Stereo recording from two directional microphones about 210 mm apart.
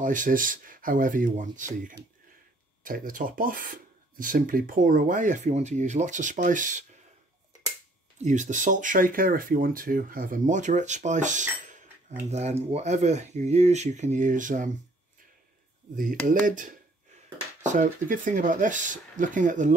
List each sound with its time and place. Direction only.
0.0 s speech: 40° right (ahead or behind)
8.2 s speech: 35° right (ahead or behind)
16.3 s speech: 40° right (ahead or behind)